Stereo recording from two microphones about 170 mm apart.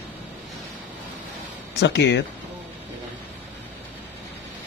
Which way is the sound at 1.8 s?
90° left.